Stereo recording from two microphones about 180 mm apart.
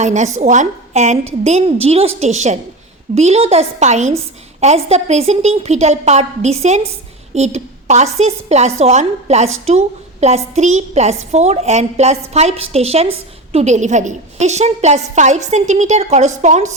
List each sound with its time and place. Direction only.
0.0 s a woman's voice: 40° right (ahead or behind)